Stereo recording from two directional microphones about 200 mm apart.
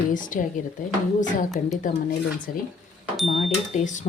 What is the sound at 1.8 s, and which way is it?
Speech, 45° left (ahead or behind).